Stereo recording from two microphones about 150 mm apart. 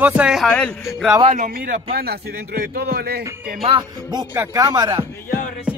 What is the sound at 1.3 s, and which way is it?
A man's voice, 70° right (ahead or behind).